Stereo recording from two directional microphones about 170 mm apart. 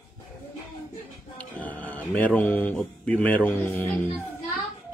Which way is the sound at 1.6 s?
10° left (ahead or behind).